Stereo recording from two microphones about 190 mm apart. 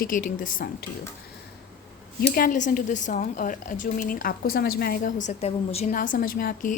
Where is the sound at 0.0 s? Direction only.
45° left (ahead or behind).